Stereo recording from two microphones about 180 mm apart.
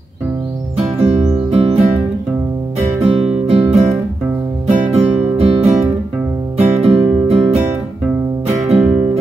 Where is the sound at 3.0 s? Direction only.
35° right (ahead or behind).